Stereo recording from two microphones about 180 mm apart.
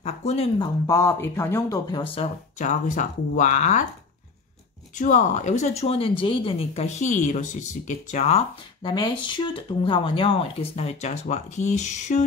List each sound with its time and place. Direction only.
0.0 s speech: 35° left (ahead or behind)
0.8 s speech: 15° left (ahead or behind)
2.1 s speech: 40° left (ahead or behind)
4.9 s speech: 40° left (ahead or behind)
8.8 s speech: 25° left (ahead or behind); by 12.3 s 40° left (ahead or behind)